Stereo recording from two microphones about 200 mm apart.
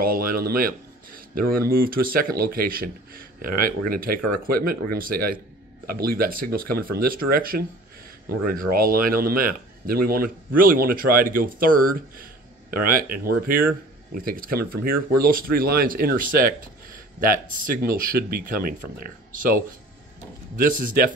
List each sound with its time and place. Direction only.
0.0 s speech: 45° right (ahead or behind)
8.7 s speech: 45° right (ahead or behind)